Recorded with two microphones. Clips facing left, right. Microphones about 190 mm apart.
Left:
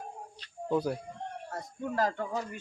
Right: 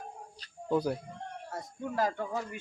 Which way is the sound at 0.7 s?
Centre (ahead or behind).